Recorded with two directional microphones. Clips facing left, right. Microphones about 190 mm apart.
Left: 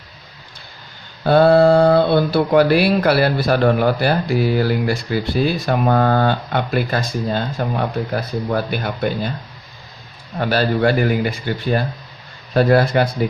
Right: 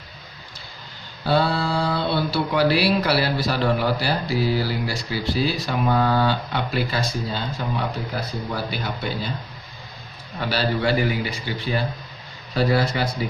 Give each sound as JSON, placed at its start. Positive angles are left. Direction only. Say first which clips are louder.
{"t": 1.2, "sound": "speech", "louder": "left 10 dB", "side_deg": 55}
{"t": 10.3, "sound": "speech", "louder": "left 6 dB", "side_deg": 50}